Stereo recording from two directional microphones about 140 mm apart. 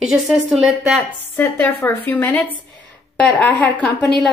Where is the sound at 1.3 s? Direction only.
15° left (ahead or behind).